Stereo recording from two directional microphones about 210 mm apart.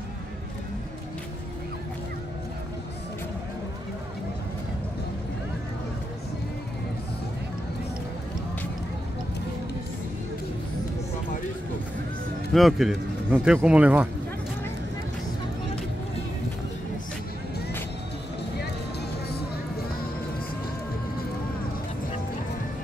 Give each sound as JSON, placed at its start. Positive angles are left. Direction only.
{"t": 12.5, "sound": "speech", "side_deg": 0}
{"t": 19.2, "sound": "music", "side_deg": 50}